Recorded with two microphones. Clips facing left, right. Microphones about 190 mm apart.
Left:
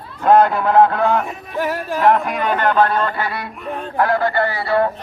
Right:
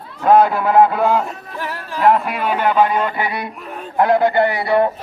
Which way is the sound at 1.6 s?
45° left (ahead or behind).